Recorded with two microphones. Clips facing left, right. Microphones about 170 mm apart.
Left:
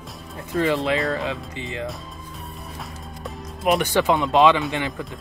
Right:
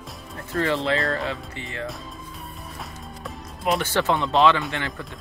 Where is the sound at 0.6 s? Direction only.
15° left (ahead or behind).